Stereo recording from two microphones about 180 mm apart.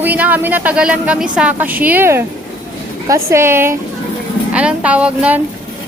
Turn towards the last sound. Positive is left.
turn(degrees=-5)  # may be behind; listen again after turning